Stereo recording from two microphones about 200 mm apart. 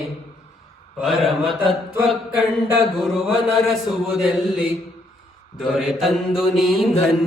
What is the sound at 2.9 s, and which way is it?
Mantra, centre (ahead or behind).